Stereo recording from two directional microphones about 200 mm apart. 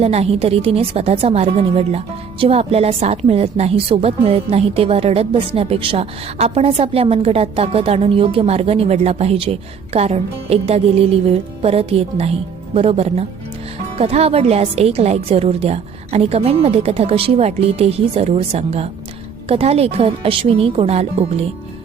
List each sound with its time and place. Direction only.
0.0 s a woman's voice: 30° right (ahead or behind)